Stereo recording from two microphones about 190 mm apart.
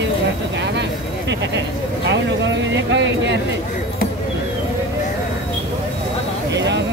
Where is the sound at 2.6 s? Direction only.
70° right (ahead or behind).